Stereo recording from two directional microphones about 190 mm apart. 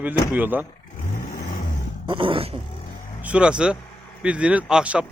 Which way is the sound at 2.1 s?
25° right (ahead or behind).